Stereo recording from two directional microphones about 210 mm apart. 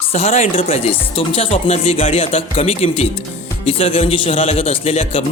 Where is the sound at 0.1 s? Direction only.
30° left (ahead or behind).